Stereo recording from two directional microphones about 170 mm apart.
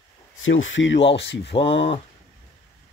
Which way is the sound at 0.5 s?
90° left.